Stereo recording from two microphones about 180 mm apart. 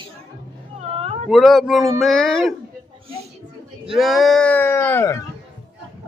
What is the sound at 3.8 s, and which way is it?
Speech, centre (ahead or behind).